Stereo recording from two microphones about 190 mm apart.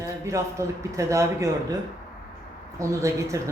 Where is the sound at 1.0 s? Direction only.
15° right (ahead or behind).